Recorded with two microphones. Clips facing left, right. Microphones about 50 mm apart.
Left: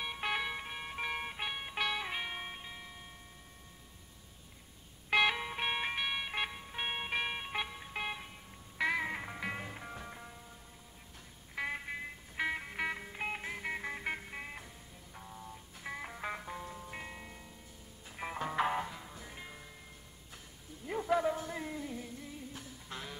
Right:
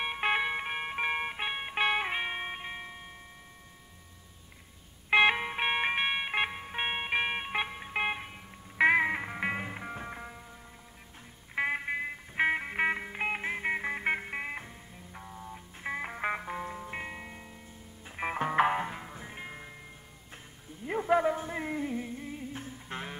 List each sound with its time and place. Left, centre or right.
0.0 s music: right
5.1 s music: right
11.5 s music: right
15.1 s music: right
15.5 s music: right
20.8 s a sound: right